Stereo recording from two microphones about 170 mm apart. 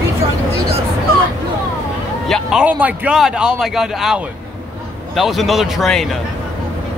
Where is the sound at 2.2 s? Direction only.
Centre (ahead or behind).